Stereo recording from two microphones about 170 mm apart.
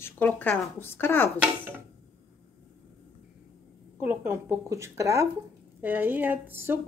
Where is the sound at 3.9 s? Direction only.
10° right (ahead or behind).